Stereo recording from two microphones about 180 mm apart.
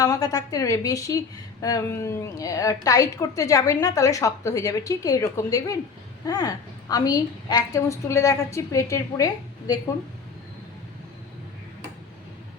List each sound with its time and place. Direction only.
0.0 s a woman's voice: 20° left (ahead or behind)